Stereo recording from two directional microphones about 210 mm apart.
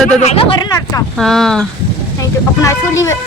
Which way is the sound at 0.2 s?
30° left (ahead or behind).